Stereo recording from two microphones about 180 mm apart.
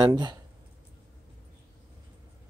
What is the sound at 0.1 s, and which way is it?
Speech, 25° right (ahead or behind).